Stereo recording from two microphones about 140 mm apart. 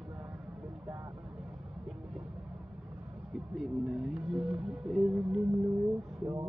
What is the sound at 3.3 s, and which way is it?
Music, centre (ahead or behind).